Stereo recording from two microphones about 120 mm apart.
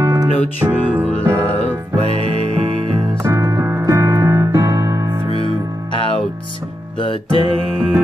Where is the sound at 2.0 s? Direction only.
55° right (ahead or behind).